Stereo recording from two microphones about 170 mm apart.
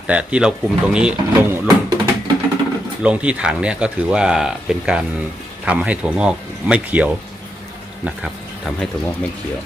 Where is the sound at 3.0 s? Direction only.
5° right (ahead or behind).